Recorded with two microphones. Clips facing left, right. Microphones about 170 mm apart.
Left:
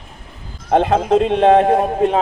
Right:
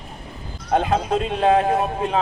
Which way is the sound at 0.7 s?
55° left (ahead or behind).